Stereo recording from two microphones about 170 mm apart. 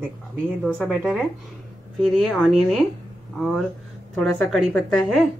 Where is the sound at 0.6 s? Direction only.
5° left (ahead or behind).